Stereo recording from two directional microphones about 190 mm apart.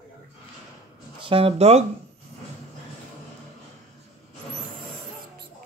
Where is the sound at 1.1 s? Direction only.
30° right (ahead or behind).